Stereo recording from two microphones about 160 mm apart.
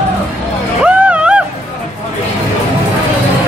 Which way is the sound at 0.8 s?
5° right (ahead or behind).